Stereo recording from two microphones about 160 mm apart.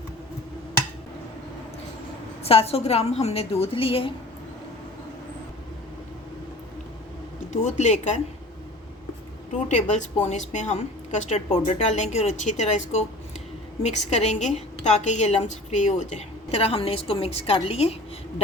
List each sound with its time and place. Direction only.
2.4 s a woman's voice: 40° left (ahead or behind)
7.5 s a woman's voice: 45° left (ahead or behind)
9.6 s a woman's voice: 45° left (ahead or behind)